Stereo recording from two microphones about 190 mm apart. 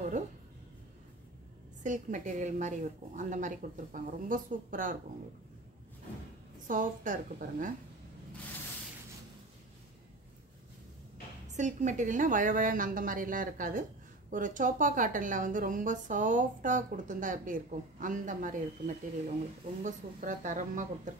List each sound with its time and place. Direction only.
1.8 s a woman's voice: 40° right (ahead or behind)
6.7 s a woman's voice: 45° right (ahead or behind)
11.4 s a woman's voice: 40° right (ahead or behind)